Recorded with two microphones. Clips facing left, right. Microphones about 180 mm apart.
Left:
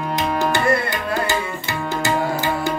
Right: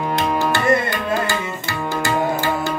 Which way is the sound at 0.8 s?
20° left (ahead or behind).